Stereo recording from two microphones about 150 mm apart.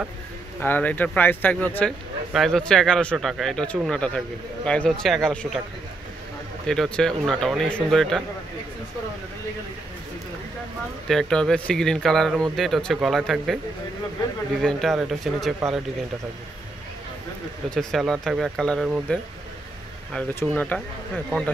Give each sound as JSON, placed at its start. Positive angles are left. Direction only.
{"t": 0.6, "sound": "speech", "side_deg": 10}
{"t": 6.7, "sound": "speech", "side_deg": 5}
{"t": 11.1, "sound": "speech", "side_deg": 5}
{"t": 14.6, "sound": "speech", "side_deg": 5}
{"t": 17.6, "sound": "speech", "side_deg": 0}
{"t": 20.3, "sound": "speech", "side_deg": 10}